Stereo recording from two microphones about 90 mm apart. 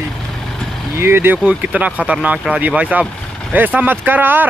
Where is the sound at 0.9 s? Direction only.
25° right (ahead or behind).